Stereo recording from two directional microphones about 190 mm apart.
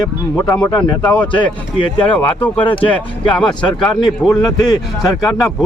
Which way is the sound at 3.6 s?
25° left (ahead or behind).